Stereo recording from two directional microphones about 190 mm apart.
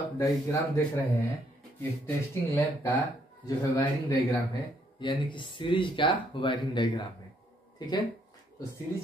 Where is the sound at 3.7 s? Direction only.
20° left (ahead or behind).